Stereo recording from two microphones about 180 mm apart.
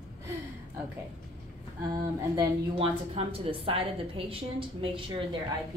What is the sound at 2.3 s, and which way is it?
A woman's voice, 30° right (ahead or behind).